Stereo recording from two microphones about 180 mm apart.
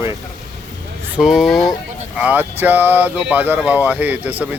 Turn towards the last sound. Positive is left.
turn(degrees=-10)  # may be behind; listen again after turning